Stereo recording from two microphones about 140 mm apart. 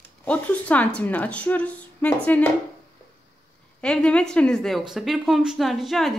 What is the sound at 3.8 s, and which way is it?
A woman's voice, 5° left (ahead or behind).